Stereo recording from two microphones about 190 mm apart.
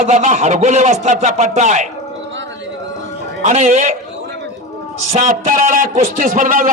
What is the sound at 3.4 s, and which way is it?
Speech, 35° right (ahead or behind).